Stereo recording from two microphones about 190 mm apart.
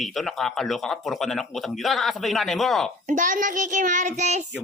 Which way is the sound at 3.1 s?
45° right (ahead or behind).